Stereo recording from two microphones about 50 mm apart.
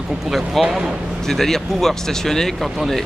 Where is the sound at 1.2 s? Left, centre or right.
Centre.